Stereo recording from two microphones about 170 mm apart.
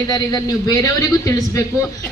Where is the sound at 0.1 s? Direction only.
20° left (ahead or behind).